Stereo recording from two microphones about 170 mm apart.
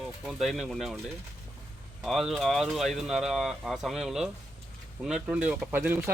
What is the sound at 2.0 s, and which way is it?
Speech, centre (ahead or behind).